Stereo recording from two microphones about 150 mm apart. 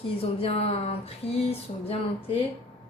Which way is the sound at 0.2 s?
40° left (ahead or behind).